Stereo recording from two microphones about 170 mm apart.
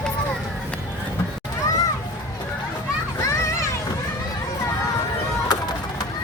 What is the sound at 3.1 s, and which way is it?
Children playing, 15° left (ahead or behind).